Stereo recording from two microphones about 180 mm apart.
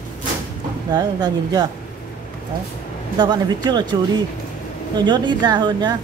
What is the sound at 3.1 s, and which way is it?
Speech, 25° right (ahead or behind).